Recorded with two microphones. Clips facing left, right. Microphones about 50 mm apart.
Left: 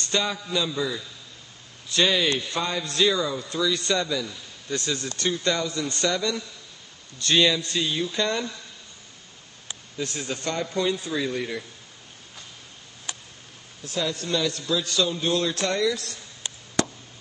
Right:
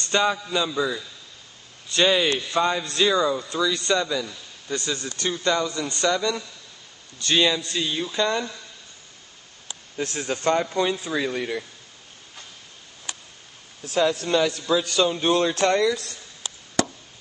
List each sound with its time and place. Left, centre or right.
0.1 s a man's voice: centre
2.8 s a man's voice: centre
9.9 s speech: right
14.0 s speech: right